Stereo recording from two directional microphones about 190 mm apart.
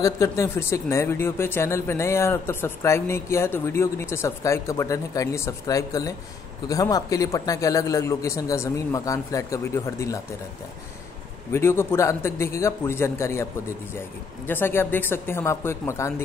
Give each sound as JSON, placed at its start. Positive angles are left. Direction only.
{"t": 0.0, "sound": "speech", "side_deg": 15}
{"t": 11.5, "sound": "speech", "side_deg": 15}